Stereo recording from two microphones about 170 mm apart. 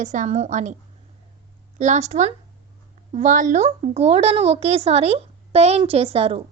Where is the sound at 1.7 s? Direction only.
45° right (ahead or behind).